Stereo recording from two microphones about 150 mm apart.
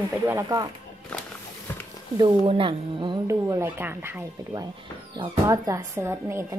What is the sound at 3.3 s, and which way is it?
Speech, 20° right (ahead or behind).